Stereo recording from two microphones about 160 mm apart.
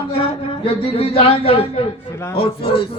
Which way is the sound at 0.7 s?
35° left (ahead or behind).